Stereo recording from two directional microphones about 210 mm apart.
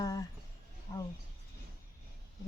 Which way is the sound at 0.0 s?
15° left (ahead or behind).